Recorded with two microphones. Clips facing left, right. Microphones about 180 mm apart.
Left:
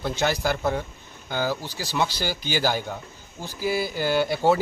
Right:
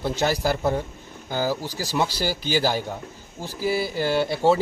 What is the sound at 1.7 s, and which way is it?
Speech, 40° right (ahead or behind).